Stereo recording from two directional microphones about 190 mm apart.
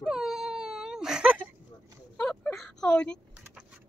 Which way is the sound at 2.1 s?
5° left (ahead or behind).